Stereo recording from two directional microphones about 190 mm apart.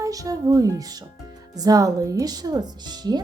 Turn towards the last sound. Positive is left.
turn(degrees=-20)  # may be behind; listen again after turning